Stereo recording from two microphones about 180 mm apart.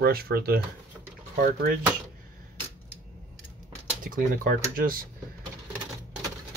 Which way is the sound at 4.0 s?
50° right (ahead or behind).